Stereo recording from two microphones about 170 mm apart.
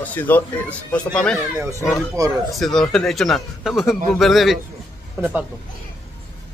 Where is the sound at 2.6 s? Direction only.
Centre (ahead or behind).